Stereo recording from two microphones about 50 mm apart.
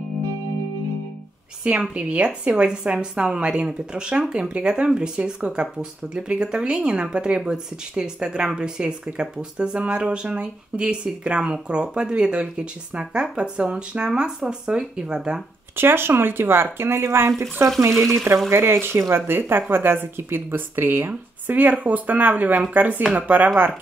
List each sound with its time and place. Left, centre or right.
1.6 s speech: right
15.7 s speech: right
21.1 s speech: right